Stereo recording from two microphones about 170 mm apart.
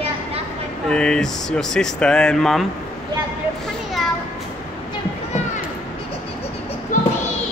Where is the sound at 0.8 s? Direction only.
5° left (ahead or behind).